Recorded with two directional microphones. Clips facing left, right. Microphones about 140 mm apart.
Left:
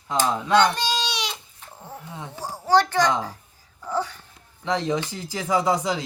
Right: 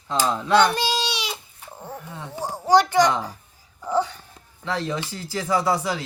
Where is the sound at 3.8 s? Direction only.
20° right (ahead or behind).